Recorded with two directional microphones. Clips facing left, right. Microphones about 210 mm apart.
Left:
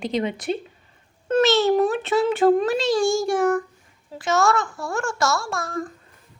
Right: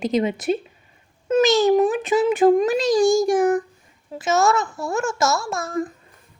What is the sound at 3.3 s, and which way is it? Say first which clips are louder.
A child's voice: right 2 dB; 15° right (ahead or behind).